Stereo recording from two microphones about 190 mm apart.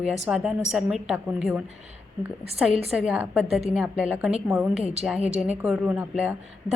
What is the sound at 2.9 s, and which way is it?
A woman's voice, 5° right (ahead or behind).